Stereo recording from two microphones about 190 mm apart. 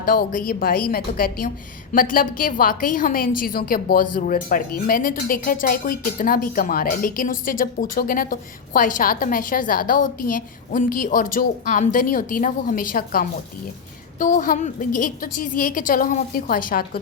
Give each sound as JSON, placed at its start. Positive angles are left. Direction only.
{"t": 0.0, "sound": "a woman's voice", "side_deg": 50}